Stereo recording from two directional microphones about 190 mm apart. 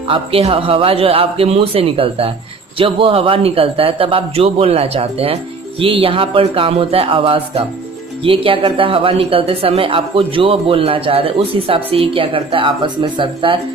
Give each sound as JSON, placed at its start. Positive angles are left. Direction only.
{"t": 0.1, "sound": "speech", "side_deg": -30}